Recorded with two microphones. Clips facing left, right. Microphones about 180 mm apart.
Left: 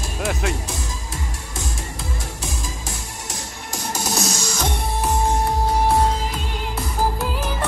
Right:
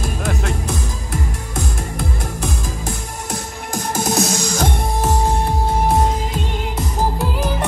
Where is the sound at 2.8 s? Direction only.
55° right (ahead or behind).